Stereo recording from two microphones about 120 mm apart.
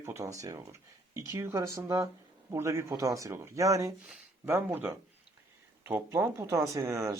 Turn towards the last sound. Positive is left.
turn(degrees=-25)  # may be behind; listen again after turning